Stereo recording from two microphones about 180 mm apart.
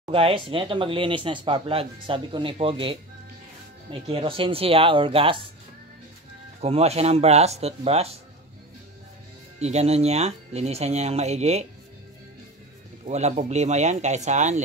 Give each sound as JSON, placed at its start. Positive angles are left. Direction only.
{"t": 0.1, "sound": "speech", "side_deg": -30}
{"t": 6.6, "sound": "speech", "side_deg": -35}
{"t": 9.6, "sound": "speech", "side_deg": -35}
{"t": 13.0, "sound": "speech", "side_deg": -40}